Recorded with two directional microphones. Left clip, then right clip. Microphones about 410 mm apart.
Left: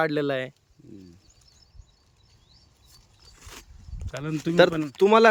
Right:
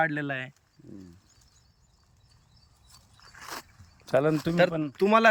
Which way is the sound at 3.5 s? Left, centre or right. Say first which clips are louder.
Right 6 dB; centre.